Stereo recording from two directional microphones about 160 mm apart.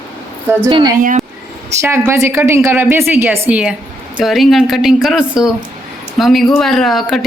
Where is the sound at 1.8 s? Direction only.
15° right (ahead or behind).